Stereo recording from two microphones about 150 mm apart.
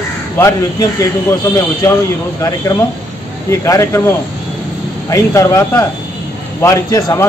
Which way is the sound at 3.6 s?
20° left (ahead or behind).